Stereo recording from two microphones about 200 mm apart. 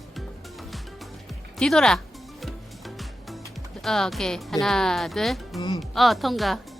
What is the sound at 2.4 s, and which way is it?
Music, centre (ahead or behind).